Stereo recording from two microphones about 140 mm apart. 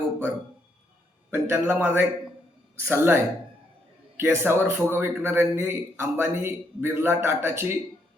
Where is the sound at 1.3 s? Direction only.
15° right (ahead or behind).